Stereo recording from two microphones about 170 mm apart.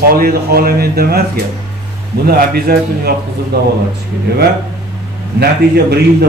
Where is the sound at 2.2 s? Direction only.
65° right (ahead or behind).